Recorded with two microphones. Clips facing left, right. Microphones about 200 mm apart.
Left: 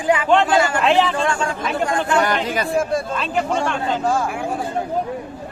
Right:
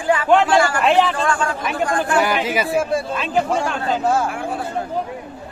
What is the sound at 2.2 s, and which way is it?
Speech, 5° right (ahead or behind).